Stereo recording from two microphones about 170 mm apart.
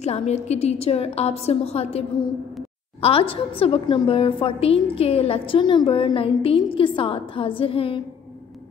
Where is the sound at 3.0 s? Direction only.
35° left (ahead or behind).